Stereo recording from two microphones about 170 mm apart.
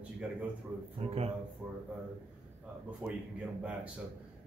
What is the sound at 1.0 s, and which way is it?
Speech, 35° right (ahead or behind).